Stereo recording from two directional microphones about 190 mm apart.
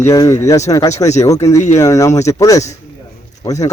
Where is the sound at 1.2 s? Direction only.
15° left (ahead or behind).